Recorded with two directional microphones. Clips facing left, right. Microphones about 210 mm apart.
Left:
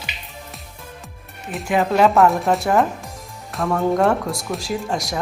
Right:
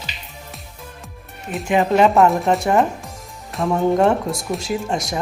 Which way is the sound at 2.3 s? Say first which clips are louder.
Right 1 dB; centre (ahead or behind).